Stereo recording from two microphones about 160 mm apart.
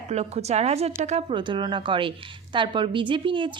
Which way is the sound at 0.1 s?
40° right (ahead or behind).